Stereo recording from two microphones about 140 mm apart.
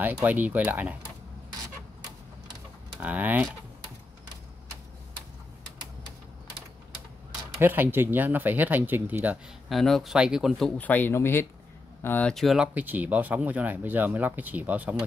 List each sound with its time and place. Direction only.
0.0 s speech: 10° right (ahead or behind)
3.0 s speech: 10° right (ahead or behind)
7.6 s speech: 15° right (ahead or behind)
9.7 s speech: centre (ahead or behind)
10.8 s speech: 10° left (ahead or behind)
12.7 s speech: 10° right (ahead or behind)